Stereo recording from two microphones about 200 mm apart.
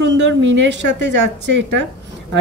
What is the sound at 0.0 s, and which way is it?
A woman's voice, 65° right (ahead or behind).